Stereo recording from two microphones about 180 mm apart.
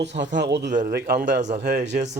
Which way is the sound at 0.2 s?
75° right (ahead or behind).